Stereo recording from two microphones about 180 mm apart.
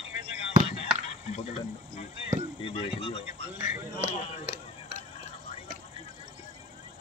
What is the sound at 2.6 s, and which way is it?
Speech, 30° left (ahead or behind).